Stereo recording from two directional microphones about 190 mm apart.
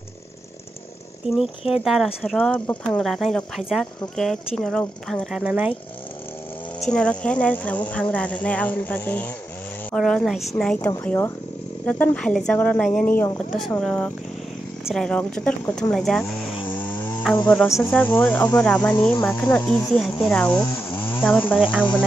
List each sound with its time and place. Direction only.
1.3 s speech: centre (ahead or behind)
6.9 s speech: 5° left (ahead or behind)
18.9 s speech: 15° left (ahead or behind)